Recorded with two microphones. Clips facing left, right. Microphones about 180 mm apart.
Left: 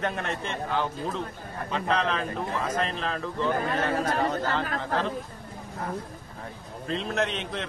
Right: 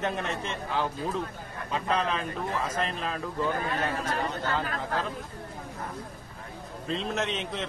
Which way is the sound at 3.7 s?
40° left (ahead or behind).